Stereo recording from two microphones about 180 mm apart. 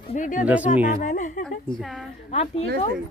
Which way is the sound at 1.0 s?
45° left (ahead or behind).